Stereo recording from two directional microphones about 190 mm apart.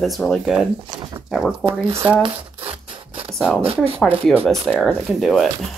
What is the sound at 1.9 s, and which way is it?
Speech, 15° right (ahead or behind).